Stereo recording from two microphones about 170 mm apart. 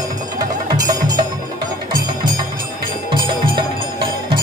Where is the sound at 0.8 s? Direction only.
20° right (ahead or behind).